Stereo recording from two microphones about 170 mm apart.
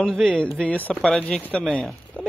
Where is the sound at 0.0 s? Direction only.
5° left (ahead or behind).